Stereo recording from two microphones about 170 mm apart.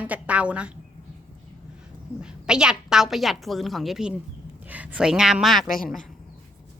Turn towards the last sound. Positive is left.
turn(degrees=0)  # may be behind; listen again after turning